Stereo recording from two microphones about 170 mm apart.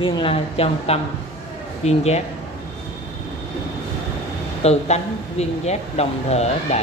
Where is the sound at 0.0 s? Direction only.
35° left (ahead or behind).